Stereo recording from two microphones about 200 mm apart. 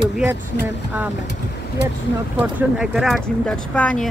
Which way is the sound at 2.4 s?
5° right (ahead or behind).